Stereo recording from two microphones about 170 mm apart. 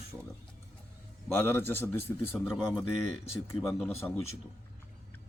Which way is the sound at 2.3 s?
Centre (ahead or behind).